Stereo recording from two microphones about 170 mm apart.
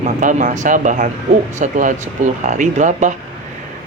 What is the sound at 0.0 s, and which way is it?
Speech, 45° right (ahead or behind).